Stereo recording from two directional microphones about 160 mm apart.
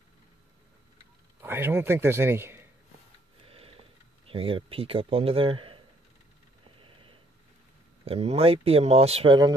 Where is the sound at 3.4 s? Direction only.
35° right (ahead or behind).